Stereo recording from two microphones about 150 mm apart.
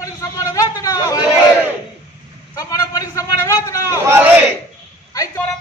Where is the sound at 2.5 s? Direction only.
25° left (ahead or behind).